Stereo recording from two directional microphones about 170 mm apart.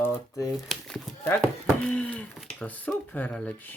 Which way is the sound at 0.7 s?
Centre (ahead or behind).